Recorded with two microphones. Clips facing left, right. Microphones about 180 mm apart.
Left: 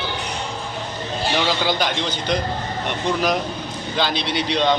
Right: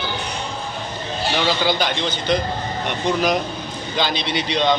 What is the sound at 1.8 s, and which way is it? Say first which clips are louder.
Speech: right 1 dB; 10° left (ahead or behind).